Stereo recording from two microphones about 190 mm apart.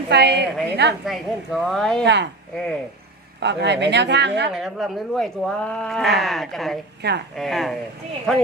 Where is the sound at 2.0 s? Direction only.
65° right (ahead or behind).